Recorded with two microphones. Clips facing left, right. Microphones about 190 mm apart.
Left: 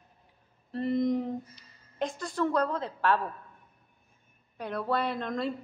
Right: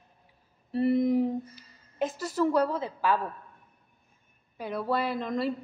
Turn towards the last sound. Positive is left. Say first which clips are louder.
# right 2 dB
turn(degrees=0)  # may be behind; listen again after turning